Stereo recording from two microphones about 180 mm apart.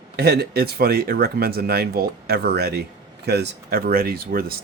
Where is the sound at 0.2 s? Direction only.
60° right (ahead or behind).